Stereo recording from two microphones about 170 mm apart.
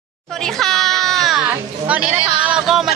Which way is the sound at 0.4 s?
5° left (ahead or behind).